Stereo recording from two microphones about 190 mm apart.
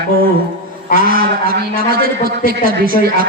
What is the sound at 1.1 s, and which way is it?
A man's voice, 50° right (ahead or behind).